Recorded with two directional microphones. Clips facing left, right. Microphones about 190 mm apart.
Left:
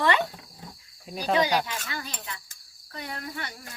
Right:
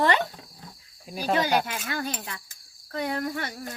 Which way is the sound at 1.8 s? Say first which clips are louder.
Right 6 dB; 50° right (ahead or behind).